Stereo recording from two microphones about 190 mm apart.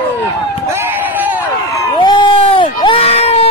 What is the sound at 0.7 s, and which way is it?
Run, 10° right (ahead or behind).